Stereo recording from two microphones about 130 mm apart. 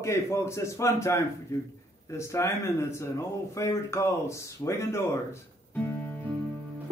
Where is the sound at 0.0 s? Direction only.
20° left (ahead or behind).